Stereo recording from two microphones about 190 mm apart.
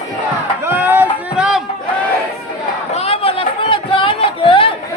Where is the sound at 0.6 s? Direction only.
10° right (ahead or behind).